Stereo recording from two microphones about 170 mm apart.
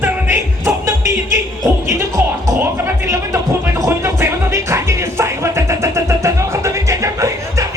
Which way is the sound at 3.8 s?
15° right (ahead or behind).